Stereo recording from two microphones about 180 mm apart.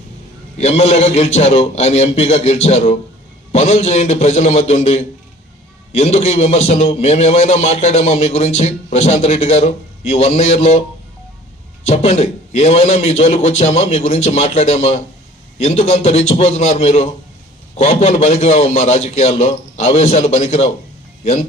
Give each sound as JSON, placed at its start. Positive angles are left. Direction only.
{"t": 0.6, "sound": "a man's voice", "side_deg": 35}
{"t": 11.9, "sound": "a man's voice", "side_deg": 35}